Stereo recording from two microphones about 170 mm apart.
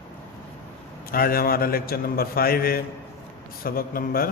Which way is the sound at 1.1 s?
60° left (ahead or behind).